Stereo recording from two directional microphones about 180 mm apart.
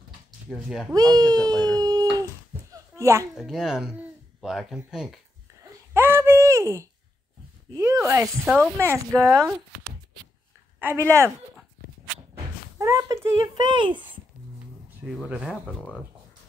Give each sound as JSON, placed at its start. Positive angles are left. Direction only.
{"t": 0.5, "sound": "speech", "side_deg": 0}
{"t": 0.9, "sound": "speech", "side_deg": -20}
{"t": 1.4, "sound": "a sound", "side_deg": 5}
{"t": 1.8, "sound": "a sound", "side_deg": -20}
{"t": 3.0, "sound": "a child's voice", "side_deg": -15}
{"t": 3.3, "sound": "speech", "side_deg": 0}
{"t": 5.9, "sound": "a sound", "side_deg": -15}
{"t": 8.0, "sound": "speech", "side_deg": -10}
{"t": 10.8, "sound": "speech", "side_deg": -15}
{"t": 12.7, "sound": "a child's voice", "side_deg": -15}
{"t": 15.2, "sound": "speech", "side_deg": -5}
{"t": 15.7, "sound": "a sound", "side_deg": 10}